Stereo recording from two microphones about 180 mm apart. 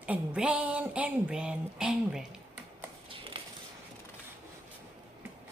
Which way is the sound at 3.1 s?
30° right (ahead or behind).